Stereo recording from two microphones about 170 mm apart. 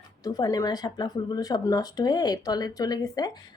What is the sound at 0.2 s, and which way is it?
Speech, 20° left (ahead or behind).